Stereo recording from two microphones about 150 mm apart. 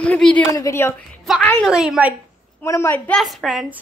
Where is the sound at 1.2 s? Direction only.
Centre (ahead or behind).